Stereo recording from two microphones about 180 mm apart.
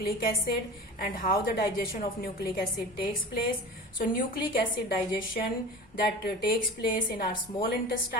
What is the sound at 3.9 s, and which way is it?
Speech, 55° left (ahead or behind).